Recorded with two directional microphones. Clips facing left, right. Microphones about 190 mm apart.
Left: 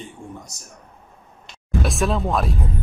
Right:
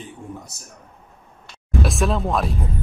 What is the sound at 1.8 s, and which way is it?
Speech, centre (ahead or behind).